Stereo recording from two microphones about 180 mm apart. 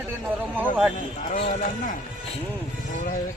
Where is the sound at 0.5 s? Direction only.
10° right (ahead or behind).